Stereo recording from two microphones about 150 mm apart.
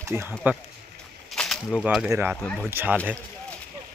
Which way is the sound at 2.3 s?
10° left (ahead or behind).